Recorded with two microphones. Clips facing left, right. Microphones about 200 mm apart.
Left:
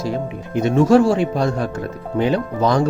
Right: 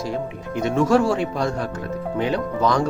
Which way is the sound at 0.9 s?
30° left (ahead or behind).